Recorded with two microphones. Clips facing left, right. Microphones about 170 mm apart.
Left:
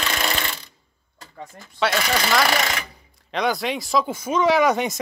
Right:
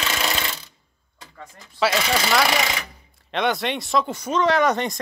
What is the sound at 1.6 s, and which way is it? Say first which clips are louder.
Speech: right 1 dB; centre (ahead or behind).